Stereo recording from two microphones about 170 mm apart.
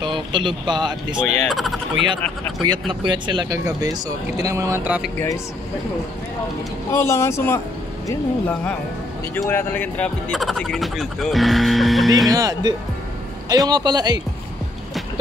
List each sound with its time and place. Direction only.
0.0 s speech: 30° right (ahead or behind)
1.1 s speech: centre (ahead or behind)
2.6 s speech: 25° right (ahead or behind); by 5.1 s 10° right (ahead or behind)
6.9 s speech: 15° left (ahead or behind)
12.3 s speech: 20° right (ahead or behind)